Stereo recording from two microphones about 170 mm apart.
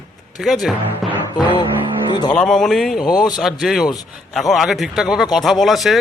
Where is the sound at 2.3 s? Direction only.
5° left (ahead or behind).